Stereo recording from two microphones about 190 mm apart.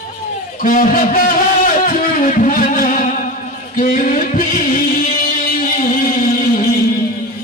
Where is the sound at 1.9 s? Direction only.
45° left (ahead or behind).